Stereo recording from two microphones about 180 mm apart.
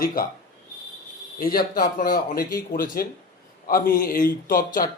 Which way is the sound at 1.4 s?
55° left (ahead or behind).